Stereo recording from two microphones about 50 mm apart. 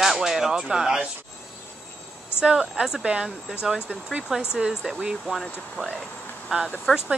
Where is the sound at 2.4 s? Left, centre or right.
Centre.